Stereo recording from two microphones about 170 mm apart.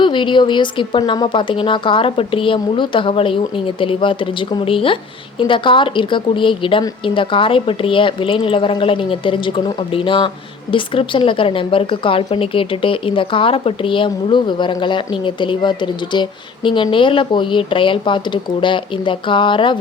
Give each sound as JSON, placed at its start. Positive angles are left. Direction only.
{"t": 0.0, "sound": "a woman's voice", "side_deg": 30}